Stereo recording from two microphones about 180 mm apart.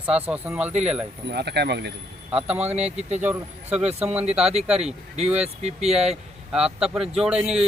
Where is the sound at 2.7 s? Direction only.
40° right (ahead or behind).